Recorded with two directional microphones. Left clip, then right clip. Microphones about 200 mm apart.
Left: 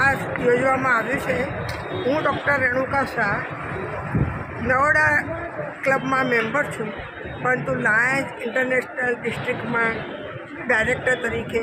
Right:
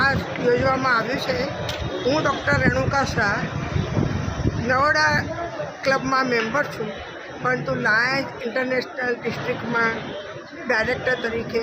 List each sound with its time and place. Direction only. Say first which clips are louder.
0.1 s speech: left 1 dB; 10° left (ahead or behind)
2.0 s speech: even; 15° right (ahead or behind)
4.7 s speech: left 1 dB; 5° right (ahead or behind)
10.7 s speech: left 1 dB; 5° left (ahead or behind)